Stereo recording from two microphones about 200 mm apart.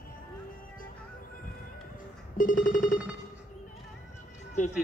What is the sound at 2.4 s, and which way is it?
Music, 40° left (ahead or behind).